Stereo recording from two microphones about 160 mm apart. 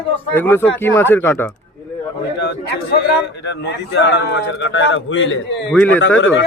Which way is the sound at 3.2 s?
90° left.